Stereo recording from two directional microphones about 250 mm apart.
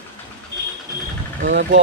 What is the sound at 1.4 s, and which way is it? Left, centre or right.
Speech, right.